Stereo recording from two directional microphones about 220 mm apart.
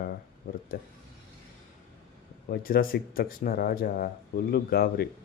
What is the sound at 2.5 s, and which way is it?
Speech, 40° left (ahead or behind).